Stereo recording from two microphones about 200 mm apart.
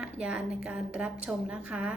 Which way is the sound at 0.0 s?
5° right (ahead or behind).